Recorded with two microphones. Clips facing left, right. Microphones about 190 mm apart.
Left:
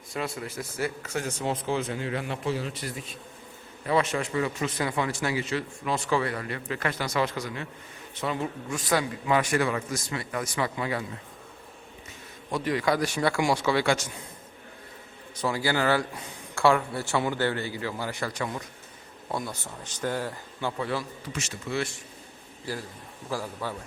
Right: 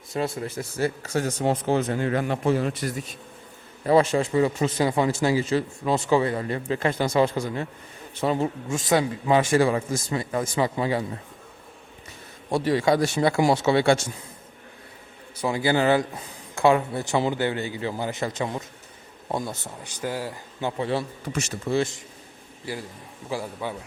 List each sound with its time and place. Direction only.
0.1 s a man's voice: 30° right (ahead or behind)
1.5 s speech: 50° right (ahead or behind)
3.8 s a man's voice: 35° right (ahead or behind)
12.5 s a man's voice: 30° right (ahead or behind)
15.4 s a man's voice: 20° right (ahead or behind)
19.8 s speech: 10° right (ahead or behind)
20.6 s a man's voice: 20° right (ahead or behind)
23.3 s speech: 15° right (ahead or behind)